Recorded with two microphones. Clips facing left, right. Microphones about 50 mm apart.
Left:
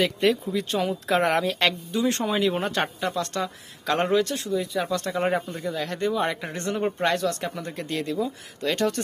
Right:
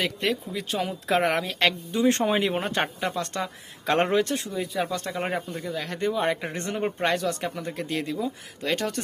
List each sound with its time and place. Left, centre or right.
0.0 s a woman's voice: centre
1.9 s speech: right
3.8 s speech: right
4.7 s a woman's voice: centre
6.3 s speech: right
6.7 s speech: centre